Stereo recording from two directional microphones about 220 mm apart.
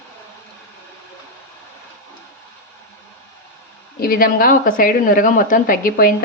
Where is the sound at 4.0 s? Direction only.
40° left (ahead or behind).